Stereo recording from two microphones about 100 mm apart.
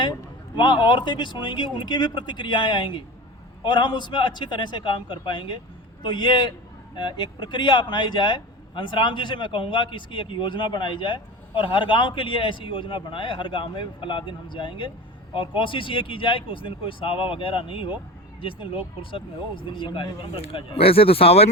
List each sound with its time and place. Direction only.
0.0 s a man's voice: 50° left (ahead or behind); by 21.5 s 90° left